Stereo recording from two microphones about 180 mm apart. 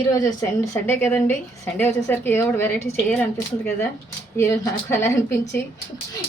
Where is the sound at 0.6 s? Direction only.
15° left (ahead or behind).